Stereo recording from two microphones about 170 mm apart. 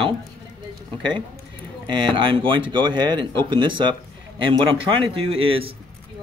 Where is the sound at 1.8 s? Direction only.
30° right (ahead or behind).